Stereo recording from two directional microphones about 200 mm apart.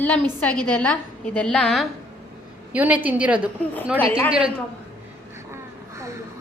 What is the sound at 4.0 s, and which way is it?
Speech, 10° left (ahead or behind).